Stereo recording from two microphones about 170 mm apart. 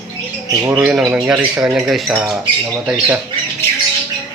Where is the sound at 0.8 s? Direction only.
5° right (ahead or behind).